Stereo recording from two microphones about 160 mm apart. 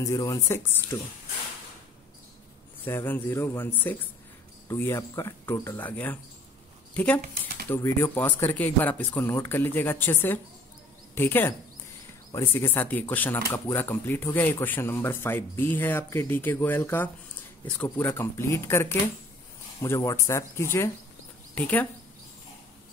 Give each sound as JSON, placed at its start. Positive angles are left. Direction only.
{"t": 0.0, "sound": "speech", "side_deg": 20}
{"t": 2.8, "sound": "speech", "side_deg": 15}
{"t": 7.2, "sound": "a sound", "side_deg": -70}
{"t": 7.7, "sound": "speech", "side_deg": 15}